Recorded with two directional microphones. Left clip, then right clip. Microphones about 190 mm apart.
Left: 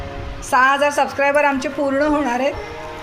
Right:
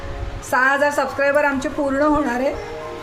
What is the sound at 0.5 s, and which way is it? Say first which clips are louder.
A woman's voice: left 2 dB; 5° left (ahead or behind).